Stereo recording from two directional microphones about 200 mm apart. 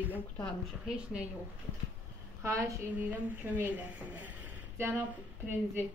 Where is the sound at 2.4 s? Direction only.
15° right (ahead or behind).